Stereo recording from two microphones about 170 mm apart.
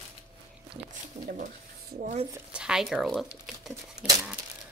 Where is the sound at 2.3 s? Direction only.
5° right (ahead or behind).